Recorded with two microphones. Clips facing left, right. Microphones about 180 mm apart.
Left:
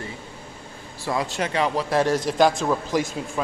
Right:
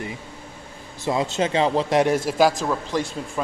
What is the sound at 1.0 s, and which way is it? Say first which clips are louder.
Speech: right 3 dB; 20° right (ahead or behind).